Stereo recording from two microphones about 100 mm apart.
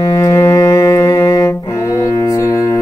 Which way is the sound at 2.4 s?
30° left (ahead or behind).